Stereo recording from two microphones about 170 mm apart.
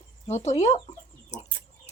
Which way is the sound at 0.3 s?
40° left (ahead or behind).